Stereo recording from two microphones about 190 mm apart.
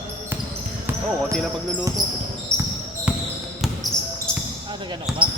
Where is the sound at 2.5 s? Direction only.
15° right (ahead or behind).